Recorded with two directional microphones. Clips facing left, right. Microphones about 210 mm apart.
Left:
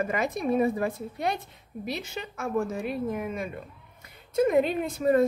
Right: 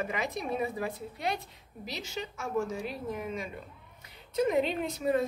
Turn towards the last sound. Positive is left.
turn(degrees=50)  # may be behind; listen again after turning